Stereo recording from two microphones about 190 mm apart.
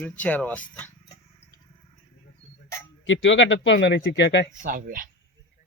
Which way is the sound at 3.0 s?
80° left.